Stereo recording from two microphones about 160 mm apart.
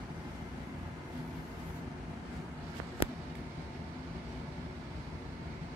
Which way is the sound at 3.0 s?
35° left (ahead or behind).